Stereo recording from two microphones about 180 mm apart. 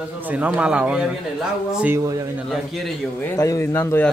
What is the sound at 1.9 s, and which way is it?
Speech, 20° right (ahead or behind).